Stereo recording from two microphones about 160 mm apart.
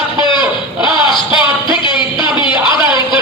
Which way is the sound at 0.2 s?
30° left (ahead or behind).